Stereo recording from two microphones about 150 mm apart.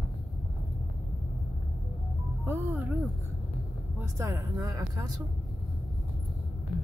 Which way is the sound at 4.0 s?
20° right (ahead or behind).